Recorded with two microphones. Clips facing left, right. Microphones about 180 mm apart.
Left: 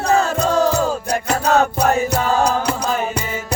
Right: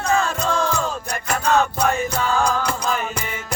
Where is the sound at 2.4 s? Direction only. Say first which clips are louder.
Left 3 dB; 35° left (ahead or behind).